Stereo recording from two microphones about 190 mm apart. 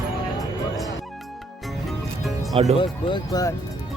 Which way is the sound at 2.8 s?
25° left (ahead or behind).